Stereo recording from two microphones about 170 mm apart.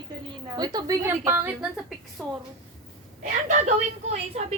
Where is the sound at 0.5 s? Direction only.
25° right (ahead or behind).